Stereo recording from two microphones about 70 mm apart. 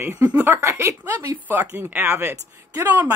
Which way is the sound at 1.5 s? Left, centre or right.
Right.